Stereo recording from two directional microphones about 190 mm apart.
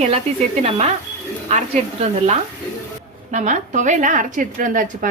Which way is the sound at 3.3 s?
40° right (ahead or behind).